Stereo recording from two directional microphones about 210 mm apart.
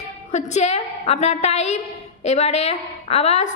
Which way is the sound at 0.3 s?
35° left (ahead or behind).